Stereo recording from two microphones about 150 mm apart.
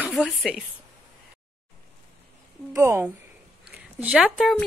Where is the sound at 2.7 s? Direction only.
15° right (ahead or behind); by 4.7 s centre (ahead or behind).